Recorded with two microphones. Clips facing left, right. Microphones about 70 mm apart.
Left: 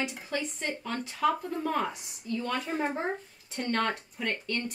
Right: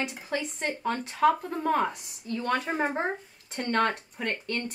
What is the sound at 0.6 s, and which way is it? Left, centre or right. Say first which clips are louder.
A woman's voice: right 4 dB; right.